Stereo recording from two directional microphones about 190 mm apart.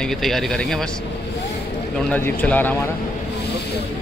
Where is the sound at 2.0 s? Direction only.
10° left (ahead or behind).